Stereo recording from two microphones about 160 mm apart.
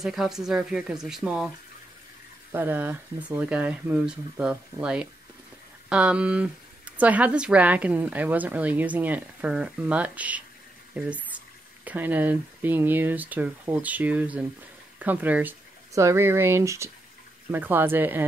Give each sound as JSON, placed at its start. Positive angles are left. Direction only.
{"t": 0.0, "sound": "speech", "side_deg": 0}
{"t": 2.5, "sound": "speech", "side_deg": -10}